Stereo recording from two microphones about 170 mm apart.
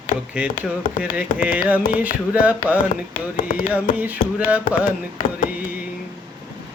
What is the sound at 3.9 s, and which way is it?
Mantra, 10° right (ahead or behind).